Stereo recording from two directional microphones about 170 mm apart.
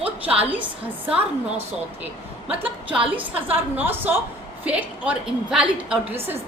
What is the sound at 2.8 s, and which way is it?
Speech, 30° right (ahead or behind).